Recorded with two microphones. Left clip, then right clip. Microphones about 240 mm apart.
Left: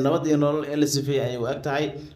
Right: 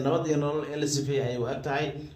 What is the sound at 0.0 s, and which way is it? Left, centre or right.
A man's voice, left.